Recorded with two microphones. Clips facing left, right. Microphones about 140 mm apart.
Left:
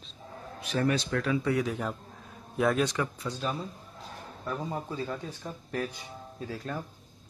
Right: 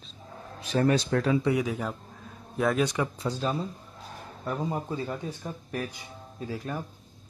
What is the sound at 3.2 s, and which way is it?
Speech, 35° right (ahead or behind).